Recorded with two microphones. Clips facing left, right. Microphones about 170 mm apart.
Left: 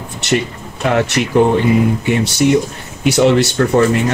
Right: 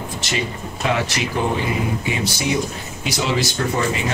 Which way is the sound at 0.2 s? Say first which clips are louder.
Left 13 dB; 65° left (ahead or behind).